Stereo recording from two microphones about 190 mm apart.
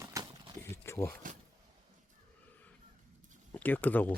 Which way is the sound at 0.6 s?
15° left (ahead or behind).